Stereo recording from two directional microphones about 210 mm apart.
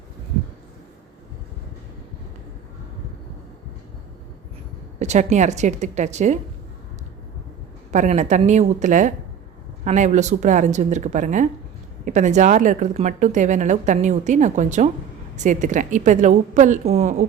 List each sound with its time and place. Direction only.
4.9 s a woman's voice: 35° right (ahead or behind)
7.9 s a woman's voice: 35° right (ahead or behind)